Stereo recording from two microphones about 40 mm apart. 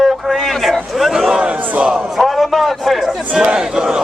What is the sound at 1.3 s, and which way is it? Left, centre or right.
Battle cry, right.